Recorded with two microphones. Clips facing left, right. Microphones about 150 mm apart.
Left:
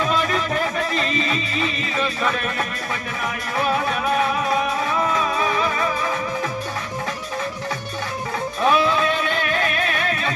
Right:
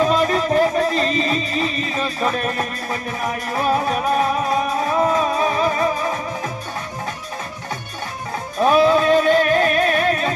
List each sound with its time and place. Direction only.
0.0 s music: 35° right (ahead or behind)
8.6 s music: 40° right (ahead or behind)